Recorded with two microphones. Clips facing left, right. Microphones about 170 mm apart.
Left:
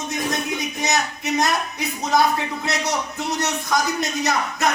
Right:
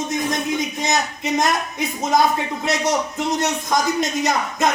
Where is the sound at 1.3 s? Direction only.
20° right (ahead or behind).